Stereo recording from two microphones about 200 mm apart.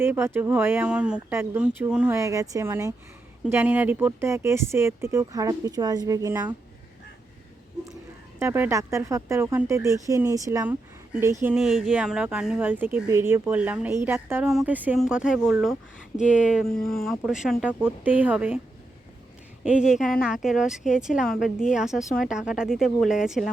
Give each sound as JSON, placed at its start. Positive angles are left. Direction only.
{"t": 0.0, "sound": "speech", "side_deg": -10}
{"t": 8.4, "sound": "speech", "side_deg": -10}
{"t": 11.5, "sound": "speech", "side_deg": -5}
{"t": 19.6, "sound": "speech", "side_deg": -5}